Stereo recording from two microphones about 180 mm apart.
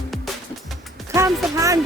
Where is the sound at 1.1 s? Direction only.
15° right (ahead or behind).